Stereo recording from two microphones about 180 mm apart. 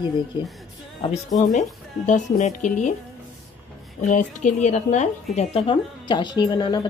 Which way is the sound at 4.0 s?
45° left (ahead or behind).